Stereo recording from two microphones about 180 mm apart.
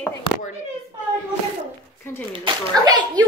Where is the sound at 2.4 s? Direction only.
25° right (ahead or behind).